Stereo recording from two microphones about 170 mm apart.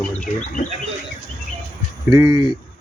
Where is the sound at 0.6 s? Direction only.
55° left (ahead or behind).